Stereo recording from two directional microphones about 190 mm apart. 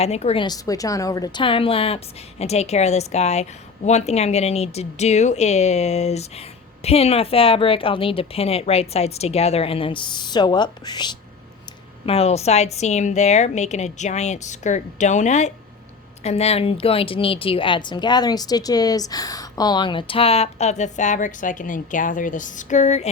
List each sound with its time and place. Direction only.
0.0 s a woman's voice: 35° left (ahead or behind)
0.4 s a woman's voice: 20° left (ahead or behind); by 23.0 s 40° left (ahead or behind)